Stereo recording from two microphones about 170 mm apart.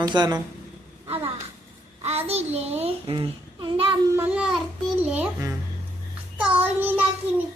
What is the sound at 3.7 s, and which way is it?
Child singing, 30° right (ahead or behind).